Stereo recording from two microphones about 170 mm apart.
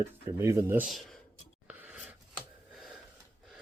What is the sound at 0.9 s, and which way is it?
Speech, centre (ahead or behind).